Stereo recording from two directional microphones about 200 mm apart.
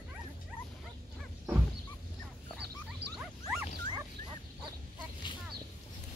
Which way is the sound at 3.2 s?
Centre (ahead or behind).